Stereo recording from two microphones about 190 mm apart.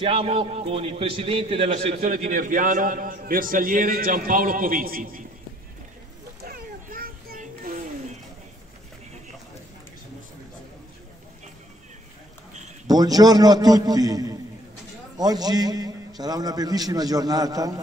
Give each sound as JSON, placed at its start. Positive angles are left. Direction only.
{"t": 0.0, "sound": "a man's voice", "side_deg": -30}
{"t": 6.4, "sound": "a sound", "side_deg": -50}
{"t": 12.8, "sound": "a man's voice", "side_deg": -20}